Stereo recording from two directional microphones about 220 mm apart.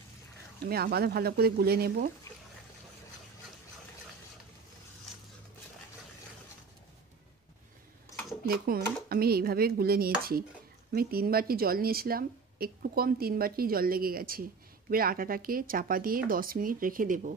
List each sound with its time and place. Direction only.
0.7 s a woman's voice: 45° right (ahead or behind)
8.5 s a woman's voice: 45° right (ahead or behind)